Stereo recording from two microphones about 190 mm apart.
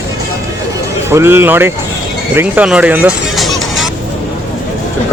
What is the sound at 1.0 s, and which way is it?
Speech, 15° right (ahead or behind).